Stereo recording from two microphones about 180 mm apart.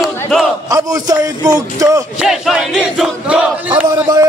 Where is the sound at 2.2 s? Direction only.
5° right (ahead or behind).